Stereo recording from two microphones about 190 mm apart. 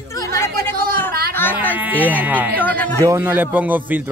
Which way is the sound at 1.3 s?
10° left (ahead or behind).